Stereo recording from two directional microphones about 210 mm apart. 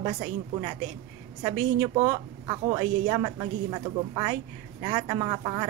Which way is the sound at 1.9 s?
20° right (ahead or behind).